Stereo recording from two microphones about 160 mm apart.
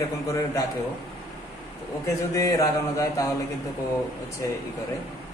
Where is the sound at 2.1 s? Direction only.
20° left (ahead or behind).